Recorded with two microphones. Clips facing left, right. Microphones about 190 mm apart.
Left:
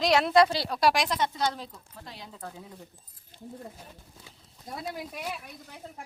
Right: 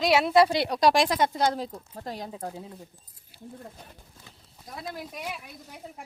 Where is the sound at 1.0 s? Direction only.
45° right (ahead or behind).